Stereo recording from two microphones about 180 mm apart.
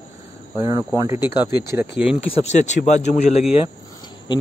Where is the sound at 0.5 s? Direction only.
20° right (ahead or behind).